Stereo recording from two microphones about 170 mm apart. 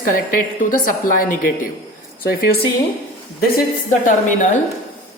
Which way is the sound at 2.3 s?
70° left (ahead or behind).